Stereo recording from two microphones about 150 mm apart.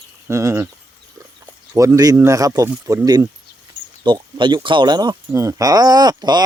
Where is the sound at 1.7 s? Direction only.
20° right (ahead or behind).